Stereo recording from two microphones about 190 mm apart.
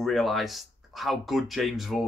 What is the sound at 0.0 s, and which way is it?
Speech, centre (ahead or behind).